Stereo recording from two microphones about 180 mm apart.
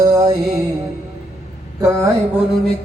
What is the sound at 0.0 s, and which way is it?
Music, 20° right (ahead or behind).